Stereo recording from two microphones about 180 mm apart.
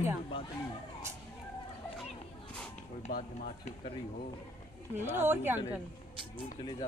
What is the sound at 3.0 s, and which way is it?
Speech, 45° left (ahead or behind).